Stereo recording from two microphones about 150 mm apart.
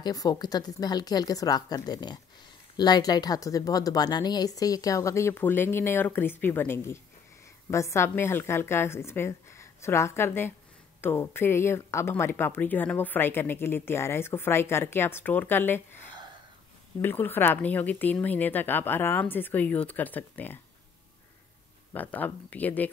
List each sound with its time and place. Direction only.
0.0 s speech: 25° left (ahead or behind)
17.0 s speech: 15° left (ahead or behind)
21.9 s speech: 10° left (ahead or behind)